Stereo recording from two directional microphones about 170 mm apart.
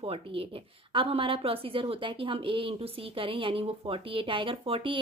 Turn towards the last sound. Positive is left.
turn(degrees=-30)  # may be behind; listen again after turning